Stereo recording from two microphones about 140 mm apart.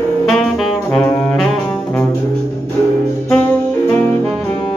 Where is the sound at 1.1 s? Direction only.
10° left (ahead or behind).